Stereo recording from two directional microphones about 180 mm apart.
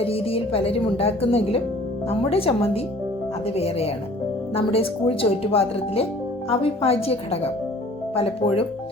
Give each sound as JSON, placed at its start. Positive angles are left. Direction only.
{"t": 0.1, "sound": "speech", "side_deg": 30}